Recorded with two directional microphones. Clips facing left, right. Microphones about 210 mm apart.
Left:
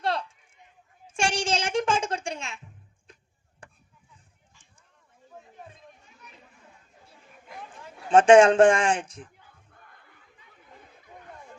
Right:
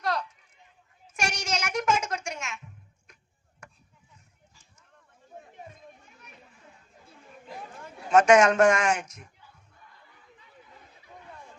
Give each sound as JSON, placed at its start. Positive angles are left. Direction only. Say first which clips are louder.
{"t": 0.0, "sound": "a sound", "louder": "left 1 dB", "side_deg": 30}
{"t": 1.0, "sound": "music", "louder": "left 5 dB", "side_deg": 30}
{"t": 3.1, "sound": "chop", "louder": "left 5 dB", "side_deg": 30}
{"t": 8.1, "sound": "speech", "louder": "left 4 dB", "side_deg": 30}
{"t": 9.7, "sound": "crowd", "louder": "left 1 dB", "side_deg": 55}